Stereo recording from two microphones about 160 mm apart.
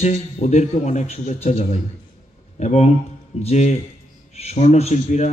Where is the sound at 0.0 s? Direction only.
45° left (ahead or behind).